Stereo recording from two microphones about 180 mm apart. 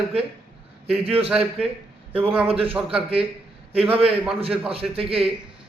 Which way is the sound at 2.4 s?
30° right (ahead or behind).